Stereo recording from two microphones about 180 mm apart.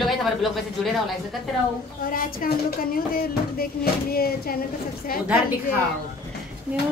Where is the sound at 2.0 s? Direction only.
50° left (ahead or behind).